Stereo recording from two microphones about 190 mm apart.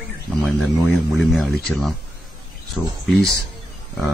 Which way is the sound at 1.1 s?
Centre (ahead or behind).